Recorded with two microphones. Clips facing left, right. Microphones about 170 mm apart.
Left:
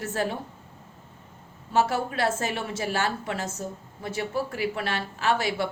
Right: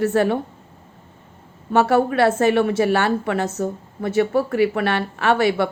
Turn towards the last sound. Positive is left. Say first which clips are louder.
# right 8 dB
turn(degrees=-60)  # may be behind; listen again after turning